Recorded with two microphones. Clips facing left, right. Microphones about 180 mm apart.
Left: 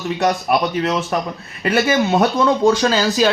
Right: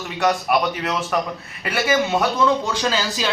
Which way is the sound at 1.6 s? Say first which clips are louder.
Left 4 dB; 35° left (ahead or behind).